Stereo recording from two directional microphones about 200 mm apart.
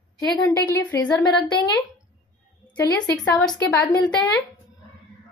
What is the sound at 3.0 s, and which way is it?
Speech, 5° left (ahead or behind).